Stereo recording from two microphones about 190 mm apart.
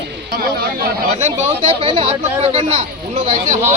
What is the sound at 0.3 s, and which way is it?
Speech, 55° right (ahead or behind).